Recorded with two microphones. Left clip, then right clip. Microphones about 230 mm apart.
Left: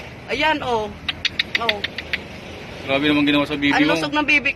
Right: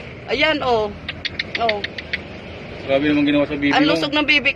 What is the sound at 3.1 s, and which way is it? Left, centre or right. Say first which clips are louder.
Speech: right 1 dB; left.